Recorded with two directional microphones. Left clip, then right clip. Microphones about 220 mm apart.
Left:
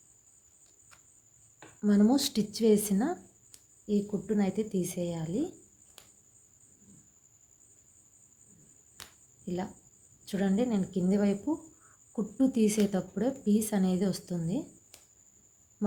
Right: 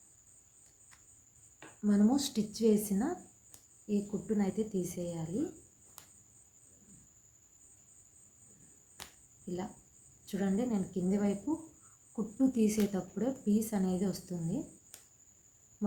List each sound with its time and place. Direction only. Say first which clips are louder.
1.8 s speech: left 4 dB; 35° left (ahead or behind)
9.0 s a sound: left 1 dB; centre (ahead or behind)
10.2 s speech: left 5 dB; 35° left (ahead or behind)